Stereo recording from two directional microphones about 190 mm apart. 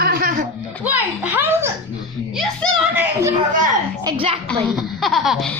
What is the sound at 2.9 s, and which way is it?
Children playing, 15° right (ahead or behind).